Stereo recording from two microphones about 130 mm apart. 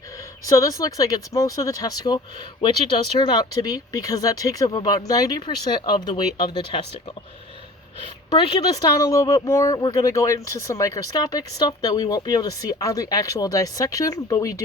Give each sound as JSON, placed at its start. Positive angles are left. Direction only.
{"t": 0.4, "sound": "speech", "side_deg": 25}
{"t": 8.0, "sound": "speech", "side_deg": 40}